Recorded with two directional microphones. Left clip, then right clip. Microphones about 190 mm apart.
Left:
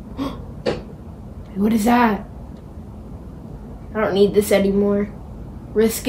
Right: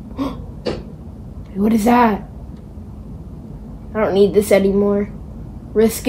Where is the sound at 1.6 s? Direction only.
25° right (ahead or behind).